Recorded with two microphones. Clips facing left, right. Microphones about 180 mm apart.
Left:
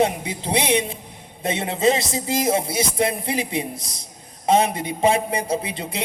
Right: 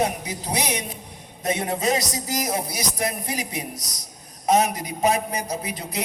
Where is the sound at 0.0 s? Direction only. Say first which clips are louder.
Left 4 dB; 25° left (ahead or behind).